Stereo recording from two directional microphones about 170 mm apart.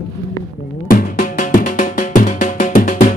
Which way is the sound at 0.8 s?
55° left (ahead or behind).